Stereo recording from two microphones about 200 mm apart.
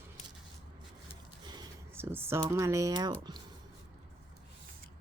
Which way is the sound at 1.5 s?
15° right (ahead or behind).